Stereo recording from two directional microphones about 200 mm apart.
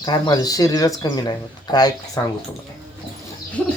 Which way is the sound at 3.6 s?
5° left (ahead or behind).